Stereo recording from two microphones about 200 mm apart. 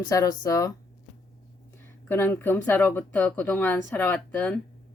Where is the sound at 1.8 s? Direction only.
10° left (ahead or behind).